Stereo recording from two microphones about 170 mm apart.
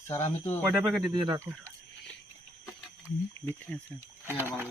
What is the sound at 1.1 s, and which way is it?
Speech, 25° right (ahead or behind).